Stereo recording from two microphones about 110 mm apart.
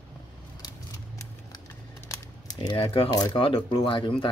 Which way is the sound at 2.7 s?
55° left (ahead or behind).